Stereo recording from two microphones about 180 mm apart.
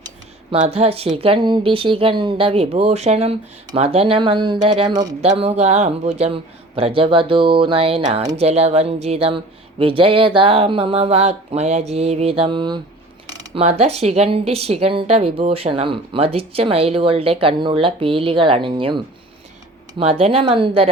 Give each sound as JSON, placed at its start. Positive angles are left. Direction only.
{"t": 0.5, "sound": "a woman's voice", "side_deg": -35}
{"t": 5.4, "sound": "a woman's voice", "side_deg": -35}
{"t": 13.2, "sound": "a sound", "side_deg": -20}
{"t": 13.6, "sound": "a woman's voice", "side_deg": -35}